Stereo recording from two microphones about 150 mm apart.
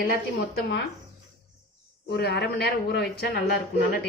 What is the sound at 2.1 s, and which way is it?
A woman's voice, 90° left.